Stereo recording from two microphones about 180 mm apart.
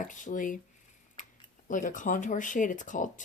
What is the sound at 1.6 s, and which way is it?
Speech, 45° left (ahead or behind).